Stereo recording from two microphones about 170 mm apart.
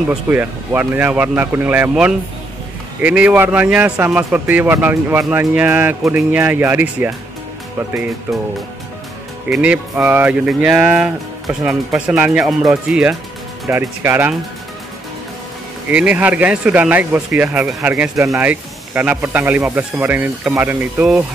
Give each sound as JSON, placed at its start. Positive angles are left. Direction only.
{"t": 0.1, "sound": "speech", "side_deg": -10}
{"t": 9.5, "sound": "speech", "side_deg": -10}
{"t": 15.9, "sound": "speech", "side_deg": -5}